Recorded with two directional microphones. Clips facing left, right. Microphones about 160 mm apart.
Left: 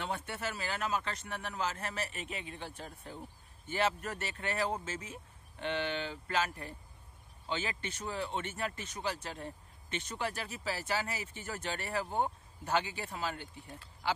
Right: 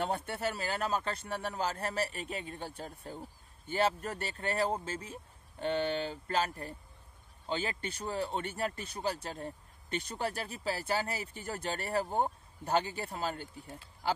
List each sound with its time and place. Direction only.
0.0 s speech: 35° right (ahead or behind)